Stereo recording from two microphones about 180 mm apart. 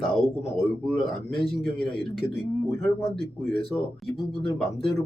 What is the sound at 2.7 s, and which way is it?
Speech, 15° left (ahead or behind).